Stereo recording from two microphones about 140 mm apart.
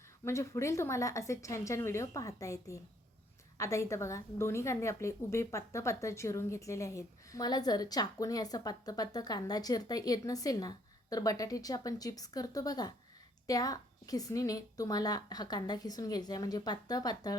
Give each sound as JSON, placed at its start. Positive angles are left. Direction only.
{"t": 0.3, "sound": "a woman's voice", "side_deg": 20}